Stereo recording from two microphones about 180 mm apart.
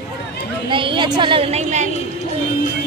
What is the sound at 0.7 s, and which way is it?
A woman's voice, 25° right (ahead or behind).